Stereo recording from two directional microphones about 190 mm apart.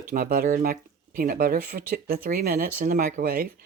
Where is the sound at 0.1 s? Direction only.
50° right (ahead or behind).